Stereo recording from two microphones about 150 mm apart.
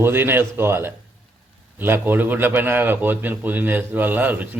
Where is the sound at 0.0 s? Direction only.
15° right (ahead or behind).